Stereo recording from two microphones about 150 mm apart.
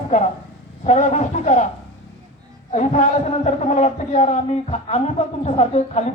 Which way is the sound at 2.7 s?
50° left (ahead or behind).